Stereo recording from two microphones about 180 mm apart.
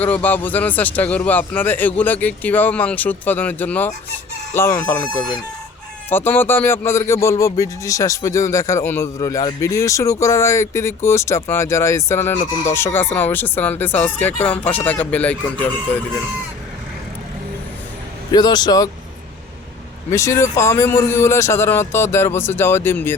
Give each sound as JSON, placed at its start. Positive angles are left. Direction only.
{"t": 0.0, "sound": "a man's voice", "side_deg": 10}
{"t": 18.3, "sound": "speech", "side_deg": 25}
{"t": 20.1, "sound": "a man's voice", "side_deg": 15}